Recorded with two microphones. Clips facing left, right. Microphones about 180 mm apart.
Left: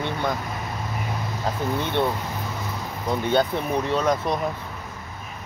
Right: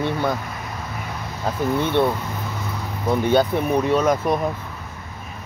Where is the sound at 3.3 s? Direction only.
15° right (ahead or behind).